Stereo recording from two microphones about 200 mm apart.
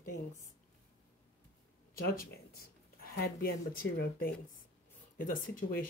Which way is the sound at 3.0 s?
50° left (ahead or behind).